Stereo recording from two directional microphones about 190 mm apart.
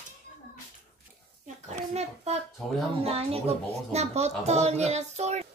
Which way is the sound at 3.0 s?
30° right (ahead or behind).